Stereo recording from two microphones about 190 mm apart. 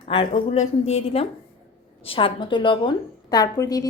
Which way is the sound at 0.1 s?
25° left (ahead or behind).